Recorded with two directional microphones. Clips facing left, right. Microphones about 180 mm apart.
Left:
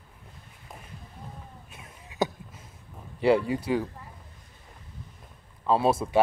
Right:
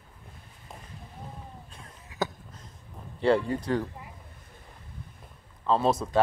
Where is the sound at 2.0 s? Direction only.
20° left (ahead or behind).